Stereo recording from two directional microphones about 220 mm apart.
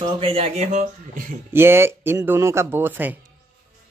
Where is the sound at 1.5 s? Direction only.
10° right (ahead or behind).